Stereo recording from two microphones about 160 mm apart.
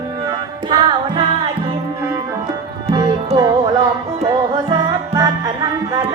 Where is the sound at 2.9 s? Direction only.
25° right (ahead or behind).